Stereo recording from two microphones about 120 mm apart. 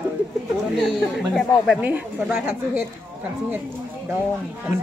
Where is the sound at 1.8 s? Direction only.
15° right (ahead or behind).